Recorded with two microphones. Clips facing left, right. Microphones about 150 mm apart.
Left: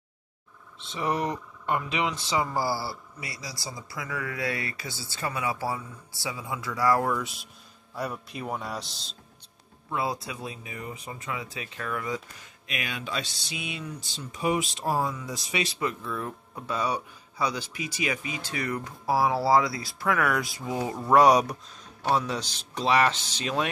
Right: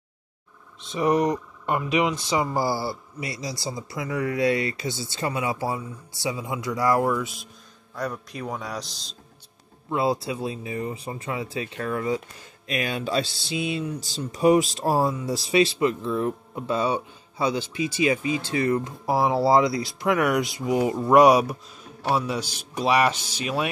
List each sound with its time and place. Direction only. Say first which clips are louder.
0.7 s speech: right 7 dB; 15° right (ahead or behind)
7.1 s a man's voice: right 4 dB; centre (ahead or behind)
9.8 s speech: right 6 dB; 25° right (ahead or behind); by 23.7 s 10° right (ahead or behind)